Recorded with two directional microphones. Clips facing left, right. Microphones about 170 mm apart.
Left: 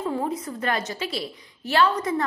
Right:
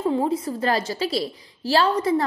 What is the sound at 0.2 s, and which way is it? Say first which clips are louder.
A woman's voice: right 5 dB; 30° right (ahead or behind).